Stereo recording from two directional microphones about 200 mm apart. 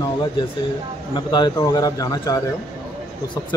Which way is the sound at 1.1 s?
20° left (ahead or behind).